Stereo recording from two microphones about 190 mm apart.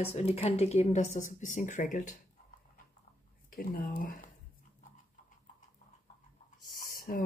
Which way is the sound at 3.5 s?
50° left (ahead or behind).